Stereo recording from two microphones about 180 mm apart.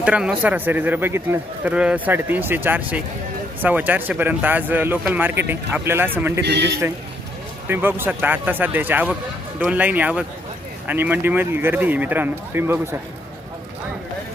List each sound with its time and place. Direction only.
0.0 s speech: 5° right (ahead or behind)
6.4 s a man's voice: 70° right (ahead or behind)
7.7 s speech: 10° right (ahead or behind)